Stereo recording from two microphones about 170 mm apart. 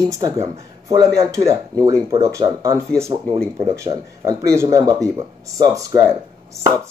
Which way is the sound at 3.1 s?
30° right (ahead or behind).